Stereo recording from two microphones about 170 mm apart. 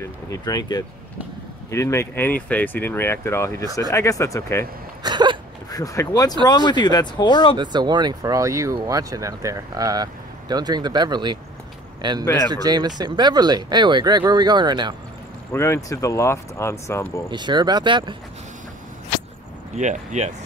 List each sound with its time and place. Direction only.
0.0 s speech: 20° left (ahead or behind)
5.0 s hiccup: 25° right (ahead or behind)
5.7 s speech: 20° left (ahead or behind)
7.5 s a man's voice: 25° right (ahead or behind)
15.5 s speech: 15° left (ahead or behind)
17.3 s speech: 25° right (ahead or behind)
19.7 s speech: 45° right (ahead or behind)